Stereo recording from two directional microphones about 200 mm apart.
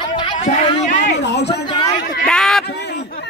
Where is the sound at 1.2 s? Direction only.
60° left (ahead or behind).